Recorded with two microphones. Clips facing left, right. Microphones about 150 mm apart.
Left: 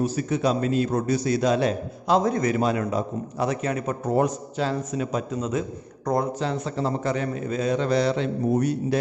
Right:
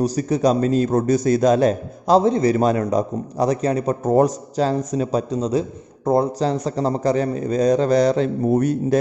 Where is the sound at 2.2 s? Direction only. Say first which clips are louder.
Right 6 dB; 30° right (ahead or behind).